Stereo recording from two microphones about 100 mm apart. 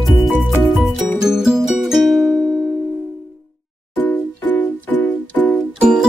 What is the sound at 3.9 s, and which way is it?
Music, 20° left (ahead or behind).